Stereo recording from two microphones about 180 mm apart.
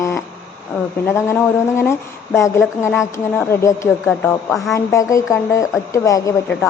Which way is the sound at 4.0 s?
Centre (ahead or behind).